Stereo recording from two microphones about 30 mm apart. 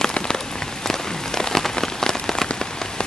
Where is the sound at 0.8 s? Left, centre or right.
Centre.